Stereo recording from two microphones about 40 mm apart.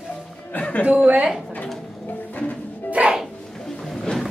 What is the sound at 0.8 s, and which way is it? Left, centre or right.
Speech, right.